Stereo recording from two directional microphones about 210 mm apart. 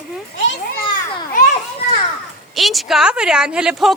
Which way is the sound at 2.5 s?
Centre (ahead or behind).